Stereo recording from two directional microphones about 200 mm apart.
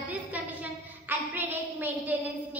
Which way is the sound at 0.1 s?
5° right (ahead or behind).